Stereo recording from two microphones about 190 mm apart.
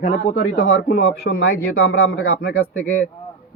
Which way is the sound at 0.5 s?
90° left.